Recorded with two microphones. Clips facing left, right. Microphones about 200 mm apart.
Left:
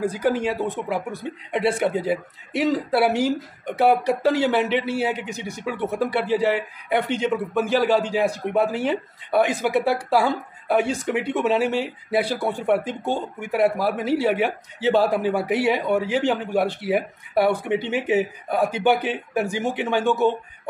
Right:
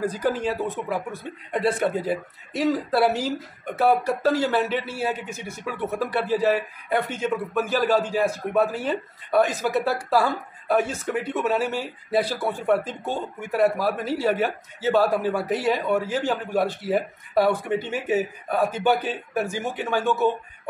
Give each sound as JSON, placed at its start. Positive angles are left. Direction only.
{"t": 0.0, "sound": "speech", "side_deg": 10}